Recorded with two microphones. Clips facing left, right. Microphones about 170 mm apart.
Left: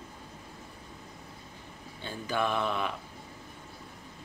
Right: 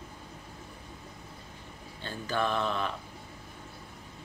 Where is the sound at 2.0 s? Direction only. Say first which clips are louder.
Even; 10° left (ahead or behind).